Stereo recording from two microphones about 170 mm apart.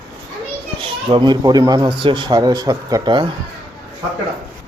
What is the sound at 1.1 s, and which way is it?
Speech, 25° right (ahead or behind).